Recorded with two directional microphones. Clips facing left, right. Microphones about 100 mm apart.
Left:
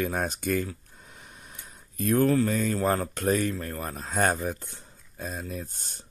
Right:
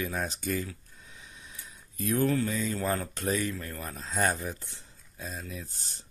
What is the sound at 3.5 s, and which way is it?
Speech, 40° left (ahead or behind).